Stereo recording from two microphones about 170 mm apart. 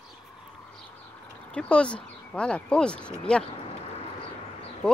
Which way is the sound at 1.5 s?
5° left (ahead or behind).